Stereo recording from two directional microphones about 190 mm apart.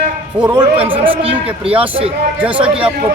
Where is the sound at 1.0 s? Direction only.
30° right (ahead or behind).